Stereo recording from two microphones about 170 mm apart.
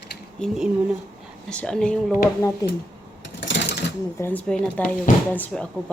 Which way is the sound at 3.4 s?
90° left.